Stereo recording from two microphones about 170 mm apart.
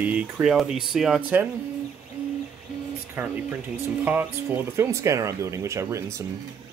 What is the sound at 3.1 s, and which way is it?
Speech, 10° right (ahead or behind).